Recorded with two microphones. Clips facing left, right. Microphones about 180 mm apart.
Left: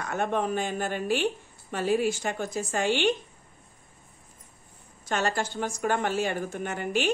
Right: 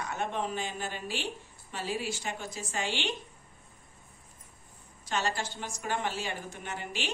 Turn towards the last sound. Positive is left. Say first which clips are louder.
# left 10 dB
turn(degrees=50)  # may be behind; listen again after turning